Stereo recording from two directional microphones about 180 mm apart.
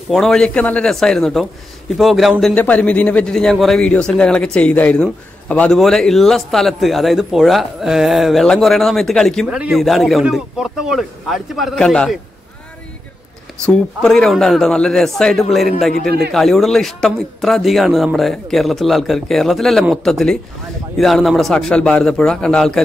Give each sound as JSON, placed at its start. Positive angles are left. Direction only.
{"t": 0.1, "sound": "a man's voice", "side_deg": 0}
{"t": 13.7, "sound": "a man's voice", "side_deg": 5}
{"t": 16.0, "sound": "a man's voice", "side_deg": -60}
{"t": 16.3, "sound": "a man's voice", "side_deg": 0}